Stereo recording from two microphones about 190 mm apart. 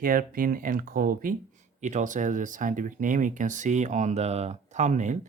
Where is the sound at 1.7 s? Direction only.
40° right (ahead or behind).